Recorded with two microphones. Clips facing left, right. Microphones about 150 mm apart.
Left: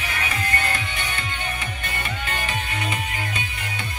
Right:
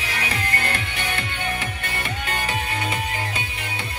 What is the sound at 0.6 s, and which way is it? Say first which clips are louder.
Music: right 1 dB; 60° right (ahead or behind).